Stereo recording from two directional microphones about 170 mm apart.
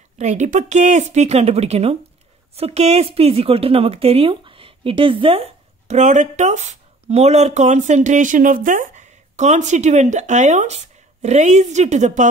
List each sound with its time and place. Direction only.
0.2 s a woman's voice: 45° right (ahead or behind)